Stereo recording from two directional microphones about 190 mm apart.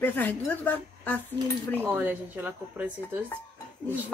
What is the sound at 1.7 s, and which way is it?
A woman's voice, 10° right (ahead or behind).